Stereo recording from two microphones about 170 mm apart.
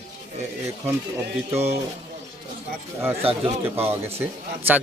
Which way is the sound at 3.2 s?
35° right (ahead or behind).